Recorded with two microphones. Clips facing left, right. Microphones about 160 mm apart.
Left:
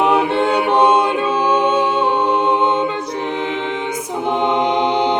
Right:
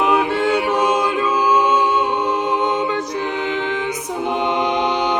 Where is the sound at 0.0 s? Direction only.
30° left (ahead or behind).